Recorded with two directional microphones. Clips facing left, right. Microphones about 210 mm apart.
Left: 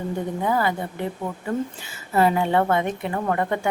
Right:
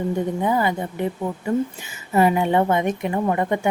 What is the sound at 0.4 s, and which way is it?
Speech, 20° right (ahead or behind).